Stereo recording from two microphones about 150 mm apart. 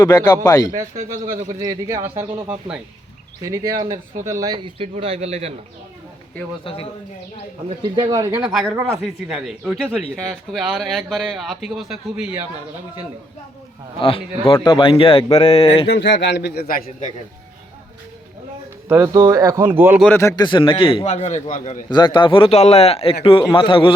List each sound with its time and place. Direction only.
0.0 s speech: 25° left (ahead or behind)
0.7 s speech: 70° right (ahead or behind)
1.5 s speech: 25° right (ahead or behind)
3.4 s speech: 20° right (ahead or behind); by 5.5 s 45° right (ahead or behind)
6.7 s a man's voice: 35° left (ahead or behind)
7.8 s speech: 30° right (ahead or behind)
8.5 s a man's voice: 5° right (ahead or behind)
14.0 s a man's voice: 35° left (ahead or behind)
16.4 s a man's voice: 85° left
18.9 s speech: 20° right (ahead or behind)
20.1 s a man's voice: 25° left (ahead or behind)
21.1 s a man's voice: 50° left (ahead or behind)
21.8 s a man's voice: 30° left (ahead or behind)